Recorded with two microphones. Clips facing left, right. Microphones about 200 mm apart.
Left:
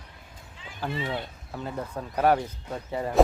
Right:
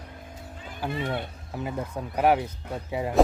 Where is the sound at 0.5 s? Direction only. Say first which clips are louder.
Right 1 dB; 45° right (ahead or behind).